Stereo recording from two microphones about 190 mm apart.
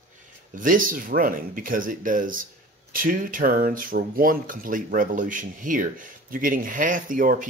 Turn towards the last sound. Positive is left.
turn(degrees=-45)  # may be behind; listen again after turning